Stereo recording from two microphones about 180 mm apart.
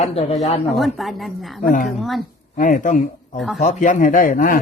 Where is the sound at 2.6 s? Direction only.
45° left (ahead or behind).